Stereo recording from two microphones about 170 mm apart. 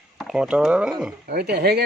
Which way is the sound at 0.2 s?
5° right (ahead or behind).